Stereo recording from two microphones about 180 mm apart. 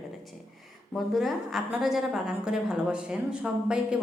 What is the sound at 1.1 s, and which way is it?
A woman's voice, centre (ahead or behind).